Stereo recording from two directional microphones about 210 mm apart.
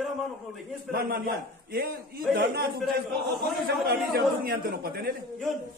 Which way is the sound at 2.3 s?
45° right (ahead or behind).